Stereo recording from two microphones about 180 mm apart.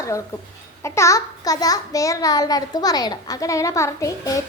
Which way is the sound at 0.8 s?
15° left (ahead or behind).